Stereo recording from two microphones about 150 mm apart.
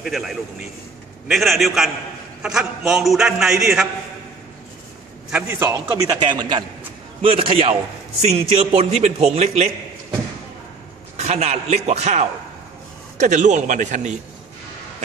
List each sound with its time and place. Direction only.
0.0 s a man's voice: centre (ahead or behind)
5.3 s a man's voice: 15° right (ahead or behind); by 9.7 s 45° right (ahead or behind)
11.1 s a man's voice: 50° right (ahead or behind)